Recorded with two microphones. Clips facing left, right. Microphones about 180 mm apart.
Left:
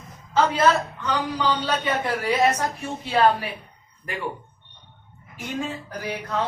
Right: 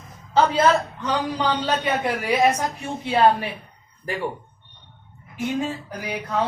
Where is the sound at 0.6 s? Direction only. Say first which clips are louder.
Right 1 dB; 15° right (ahead or behind).